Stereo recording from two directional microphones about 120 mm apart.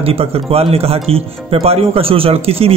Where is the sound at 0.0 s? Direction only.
55° right (ahead or behind).